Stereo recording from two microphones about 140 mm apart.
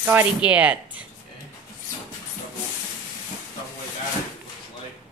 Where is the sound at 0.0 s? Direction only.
10° right (ahead or behind).